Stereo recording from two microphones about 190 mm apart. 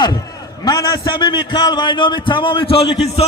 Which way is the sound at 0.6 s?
25° left (ahead or behind).